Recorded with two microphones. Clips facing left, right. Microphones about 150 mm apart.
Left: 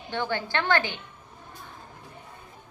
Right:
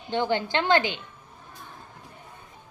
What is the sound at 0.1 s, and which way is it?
Speech, 20° right (ahead or behind).